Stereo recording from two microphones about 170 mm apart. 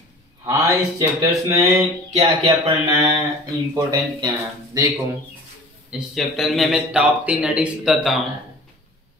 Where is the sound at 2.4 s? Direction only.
20° right (ahead or behind).